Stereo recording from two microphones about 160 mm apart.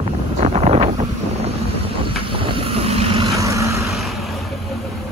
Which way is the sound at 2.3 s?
35° right (ahead or behind).